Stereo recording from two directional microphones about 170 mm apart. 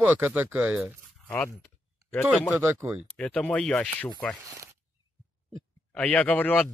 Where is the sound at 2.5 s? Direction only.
15° right (ahead or behind).